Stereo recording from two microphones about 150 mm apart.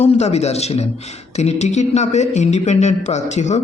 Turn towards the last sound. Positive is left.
turn(degrees=50)  # may be behind; listen again after turning